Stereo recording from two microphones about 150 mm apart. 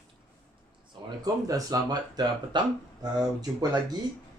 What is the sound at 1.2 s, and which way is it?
Speech, 25° right (ahead or behind).